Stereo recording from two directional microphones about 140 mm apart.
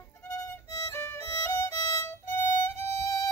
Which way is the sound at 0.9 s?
15° left (ahead or behind).